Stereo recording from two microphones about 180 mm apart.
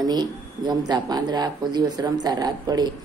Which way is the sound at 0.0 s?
25° right (ahead or behind).